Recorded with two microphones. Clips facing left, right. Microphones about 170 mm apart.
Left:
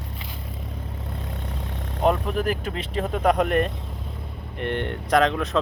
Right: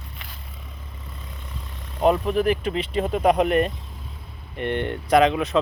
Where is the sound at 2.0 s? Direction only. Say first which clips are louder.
Right 3 dB; 5° right (ahead or behind).